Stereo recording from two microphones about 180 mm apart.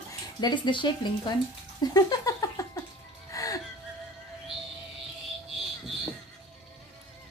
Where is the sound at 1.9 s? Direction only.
20° left (ahead or behind).